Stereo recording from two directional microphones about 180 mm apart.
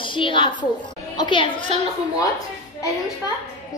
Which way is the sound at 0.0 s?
25° left (ahead or behind).